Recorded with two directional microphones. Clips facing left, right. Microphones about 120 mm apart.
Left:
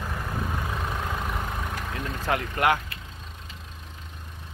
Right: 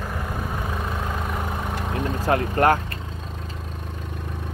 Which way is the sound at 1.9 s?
35° right (ahead or behind).